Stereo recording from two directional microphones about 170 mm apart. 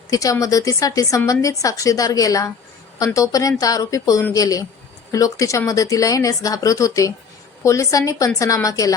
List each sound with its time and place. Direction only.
0.1 s a woman's voice: 20° left (ahead or behind)